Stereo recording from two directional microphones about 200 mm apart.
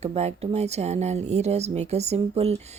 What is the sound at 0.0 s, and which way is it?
Speech, 30° right (ahead or behind).